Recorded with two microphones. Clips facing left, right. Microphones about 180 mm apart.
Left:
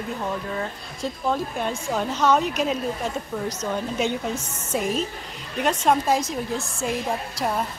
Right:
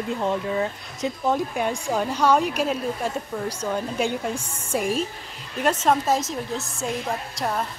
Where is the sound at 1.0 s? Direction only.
15° right (ahead or behind); by 7.6 s 5° left (ahead or behind).